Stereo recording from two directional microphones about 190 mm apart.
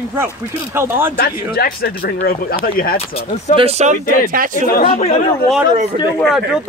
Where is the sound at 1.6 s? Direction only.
50° left (ahead or behind).